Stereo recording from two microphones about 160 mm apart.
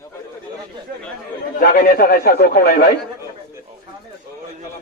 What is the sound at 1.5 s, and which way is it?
A man's voice, 65° left (ahead or behind).